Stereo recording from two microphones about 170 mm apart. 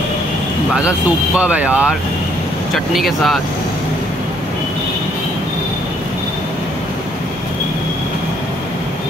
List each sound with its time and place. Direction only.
0.7 s speech: 5° right (ahead or behind)